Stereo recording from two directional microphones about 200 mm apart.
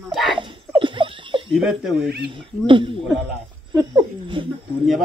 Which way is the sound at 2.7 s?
25° right (ahead or behind).